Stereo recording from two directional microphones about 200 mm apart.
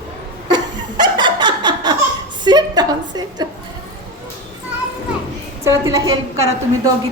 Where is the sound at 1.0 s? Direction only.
20° right (ahead or behind).